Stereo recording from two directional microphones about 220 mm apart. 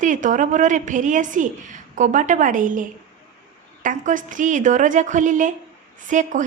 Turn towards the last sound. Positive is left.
turn(degrees=-35)  # may be behind; listen again after turning